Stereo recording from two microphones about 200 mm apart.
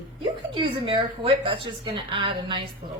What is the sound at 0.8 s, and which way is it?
A woman's voice, 25° right (ahead or behind).